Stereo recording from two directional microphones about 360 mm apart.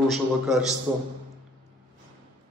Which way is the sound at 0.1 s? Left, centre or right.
Centre.